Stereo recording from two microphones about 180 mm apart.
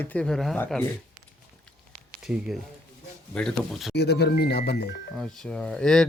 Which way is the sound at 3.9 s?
65° left (ahead or behind).